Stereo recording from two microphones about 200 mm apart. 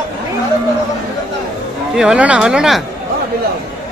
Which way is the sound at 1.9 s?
5° right (ahead or behind).